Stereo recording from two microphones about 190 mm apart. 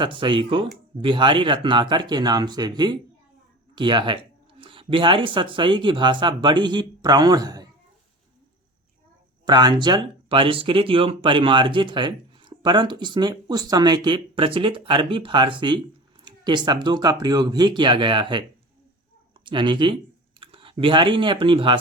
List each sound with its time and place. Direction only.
0.0 s speech: 25° right (ahead or behind)
9.5 s speech: 25° right (ahead or behind)
19.5 s speech: 25° right (ahead or behind)